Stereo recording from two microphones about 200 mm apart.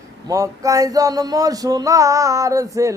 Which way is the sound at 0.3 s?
15° right (ahead or behind).